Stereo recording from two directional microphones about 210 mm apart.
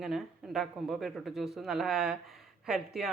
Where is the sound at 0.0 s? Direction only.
Centre (ahead or behind).